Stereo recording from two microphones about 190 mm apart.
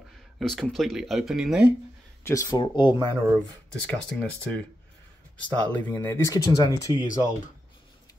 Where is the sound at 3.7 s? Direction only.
5° left (ahead or behind).